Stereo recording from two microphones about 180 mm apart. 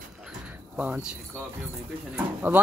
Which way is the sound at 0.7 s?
10° right (ahead or behind).